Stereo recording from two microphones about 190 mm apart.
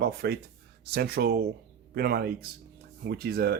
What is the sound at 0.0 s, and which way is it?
Speech, 55° right (ahead or behind).